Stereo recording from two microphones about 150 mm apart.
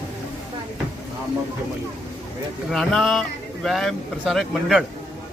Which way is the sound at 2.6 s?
Centre (ahead or behind).